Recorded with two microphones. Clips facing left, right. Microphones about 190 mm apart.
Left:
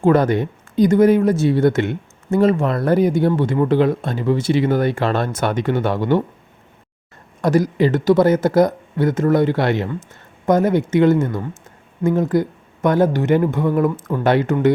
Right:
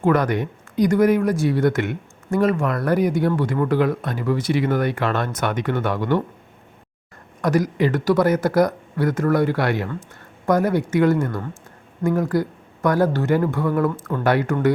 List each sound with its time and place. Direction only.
0.0 s speech: 30° left (ahead or behind)
7.4 s speech: 30° left (ahead or behind)